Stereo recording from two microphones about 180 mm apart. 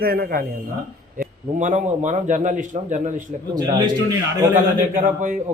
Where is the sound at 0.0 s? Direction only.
55° right (ahead or behind).